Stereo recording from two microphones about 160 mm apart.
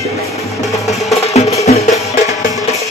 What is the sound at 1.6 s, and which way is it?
Music, 45° left (ahead or behind).